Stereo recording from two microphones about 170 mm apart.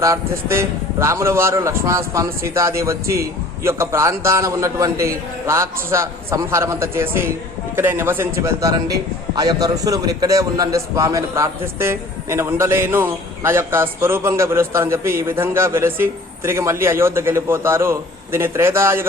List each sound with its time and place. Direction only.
0.0 s a man's voice: 15° right (ahead or behind)